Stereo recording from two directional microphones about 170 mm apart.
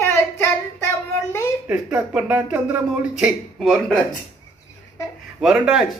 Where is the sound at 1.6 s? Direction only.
5° right (ahead or behind).